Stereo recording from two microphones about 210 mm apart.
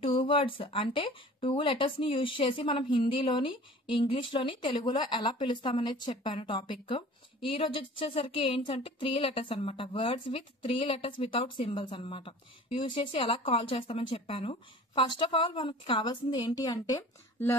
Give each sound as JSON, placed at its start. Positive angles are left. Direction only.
{"t": 0.0, "sound": "speech", "side_deg": 25}